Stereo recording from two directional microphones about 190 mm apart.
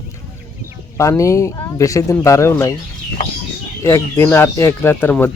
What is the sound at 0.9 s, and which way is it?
Speech, 15° left (ahead or behind).